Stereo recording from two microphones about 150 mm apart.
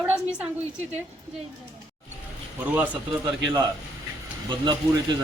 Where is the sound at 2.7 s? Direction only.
10° right (ahead or behind).